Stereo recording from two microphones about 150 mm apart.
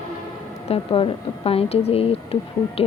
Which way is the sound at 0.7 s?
40° left (ahead or behind).